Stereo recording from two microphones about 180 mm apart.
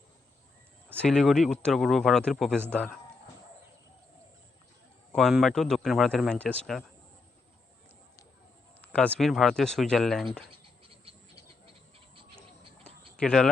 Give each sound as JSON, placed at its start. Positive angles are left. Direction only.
{"t": 0.9, "sound": "speech", "side_deg": 5}
{"t": 2.6, "sound": "a man's voice", "side_deg": -10}
{"t": 5.1, "sound": "speech", "side_deg": 0}
{"t": 8.8, "sound": "speech", "side_deg": 5}
{"t": 10.5, "sound": "scratch", "side_deg": -30}
{"t": 13.1, "sound": "speech", "side_deg": 5}